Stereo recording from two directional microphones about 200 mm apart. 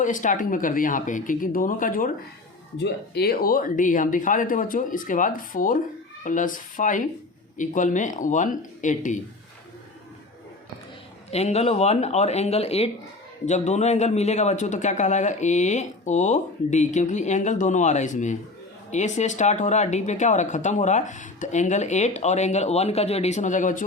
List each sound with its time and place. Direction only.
0.0 s speech: 40° left (ahead or behind)
2.7 s speech: 55° left (ahead or behind); by 9.2 s 40° left (ahead or behind)
11.3 s speech: 35° left (ahead or behind)